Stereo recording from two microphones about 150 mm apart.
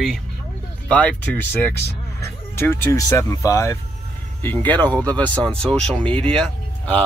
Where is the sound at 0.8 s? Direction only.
10° left (ahead or behind).